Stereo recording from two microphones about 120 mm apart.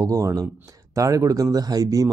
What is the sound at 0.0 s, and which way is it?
Speech, 30° right (ahead or behind).